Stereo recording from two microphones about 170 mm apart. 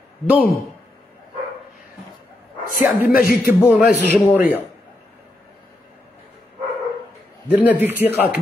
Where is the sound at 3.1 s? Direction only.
60° left (ahead or behind).